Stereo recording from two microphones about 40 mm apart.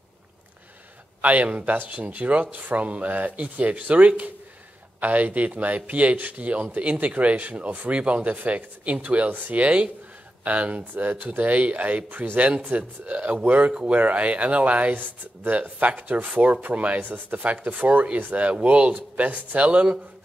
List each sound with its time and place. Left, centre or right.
1.2 s speech: right
12.1 s speech: right
12.4 s speech: right
16.0 s speech: right
16.7 s speech: right
17.0 s speech: right
18.3 s speech: right